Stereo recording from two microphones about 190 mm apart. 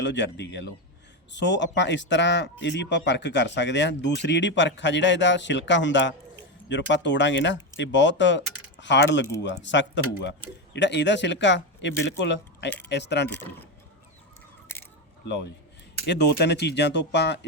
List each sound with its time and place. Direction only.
0.0 s speech: 70° left (ahead or behind)
16.0 s speech: 65° left (ahead or behind)